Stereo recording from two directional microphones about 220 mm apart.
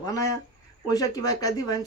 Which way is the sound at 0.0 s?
15° left (ahead or behind).